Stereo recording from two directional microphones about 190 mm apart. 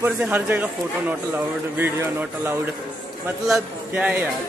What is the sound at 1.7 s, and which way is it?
A man's voice, 10° right (ahead or behind).